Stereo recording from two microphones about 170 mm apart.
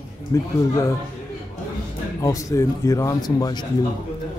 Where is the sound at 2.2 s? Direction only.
20° left (ahead or behind).